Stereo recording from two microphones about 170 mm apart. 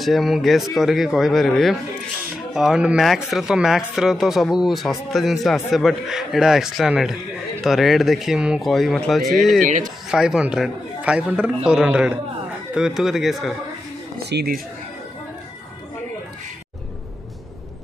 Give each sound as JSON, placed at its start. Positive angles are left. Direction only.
{"t": 0.0, "sound": "speech", "side_deg": 0}
{"t": 9.6, "sound": "speech", "side_deg": -50}
{"t": 10.0, "sound": "speech", "side_deg": -5}
{"t": 14.1, "sound": "speech", "side_deg": -65}